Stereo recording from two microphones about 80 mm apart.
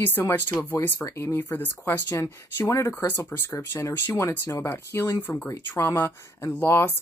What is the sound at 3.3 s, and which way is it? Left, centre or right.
Speech, left.